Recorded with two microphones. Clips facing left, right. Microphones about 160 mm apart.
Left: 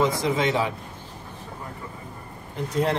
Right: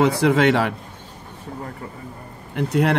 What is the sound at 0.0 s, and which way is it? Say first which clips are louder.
Speech: right 6 dB; 70° right (ahead or behind).